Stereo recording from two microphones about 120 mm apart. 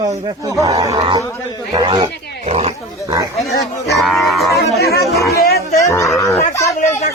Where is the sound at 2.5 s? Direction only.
60° right (ahead or behind).